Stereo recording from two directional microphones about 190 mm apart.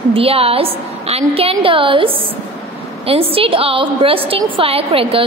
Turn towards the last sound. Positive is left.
turn(degrees=-30)  # may be behind; listen again after turning